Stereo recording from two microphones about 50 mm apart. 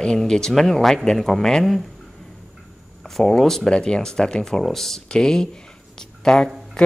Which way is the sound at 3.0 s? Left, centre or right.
Centre.